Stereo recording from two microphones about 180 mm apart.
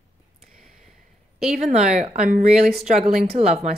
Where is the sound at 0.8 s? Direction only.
Centre (ahead or behind).